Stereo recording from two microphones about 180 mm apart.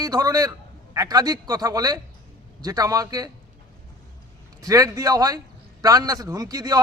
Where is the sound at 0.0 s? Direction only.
20° right (ahead or behind).